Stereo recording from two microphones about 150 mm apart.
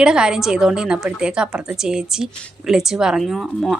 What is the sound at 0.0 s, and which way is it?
A woman's voice, 5° right (ahead or behind).